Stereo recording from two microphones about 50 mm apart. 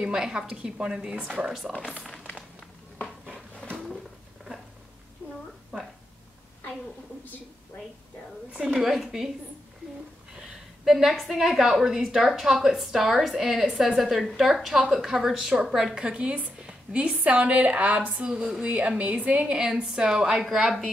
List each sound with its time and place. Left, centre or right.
0.0 s a woman's voice: centre
1.7 s a woman's voice: centre
3.6 s a sound: centre
8.5 s a woman's voice: centre
10.3 s a woman's voice: centre
16.0 s a woman's voice: right
16.6 s a sound: right
17.2 s a woman's voice: right
18.3 s a woman's voice: centre
18.7 s a woman's voice: right
19.4 s a woman's voice: centre
20.4 s a woman's voice: centre